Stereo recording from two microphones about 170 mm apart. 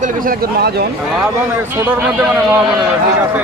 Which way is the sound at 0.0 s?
55° right (ahead or behind).